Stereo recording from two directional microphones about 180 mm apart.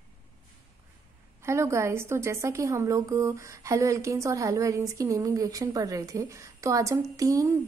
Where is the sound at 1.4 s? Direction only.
15° right (ahead or behind).